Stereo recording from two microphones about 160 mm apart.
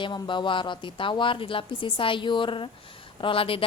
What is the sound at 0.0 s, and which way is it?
A woman's voice, 30° left (ahead or behind).